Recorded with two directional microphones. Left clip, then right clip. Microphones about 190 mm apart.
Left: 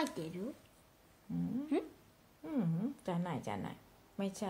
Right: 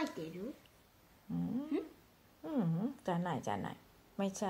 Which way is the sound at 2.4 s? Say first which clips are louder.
Right 1 dB; 5° right (ahead or behind).